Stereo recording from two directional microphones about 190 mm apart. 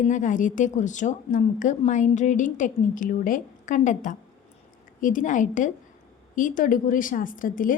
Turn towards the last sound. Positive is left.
turn(degrees=45)  # may be behind; listen again after turning